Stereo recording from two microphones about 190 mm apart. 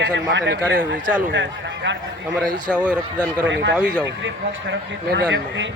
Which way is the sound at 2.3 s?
5° left (ahead or behind).